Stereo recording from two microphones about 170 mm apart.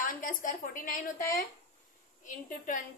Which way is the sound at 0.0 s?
50° left (ahead or behind).